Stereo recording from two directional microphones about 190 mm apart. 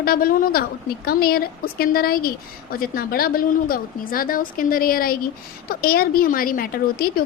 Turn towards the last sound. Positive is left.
turn(degrees=50)  # may be behind; listen again after turning